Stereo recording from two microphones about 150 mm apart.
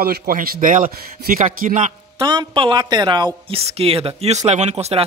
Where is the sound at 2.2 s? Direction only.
30° right (ahead or behind).